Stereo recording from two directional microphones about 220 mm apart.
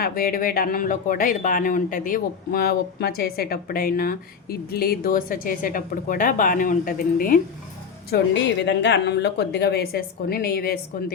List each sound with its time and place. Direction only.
0.0 s speech: 40° left (ahead or behind)
8.1 s a woman's voice: 50° left (ahead or behind)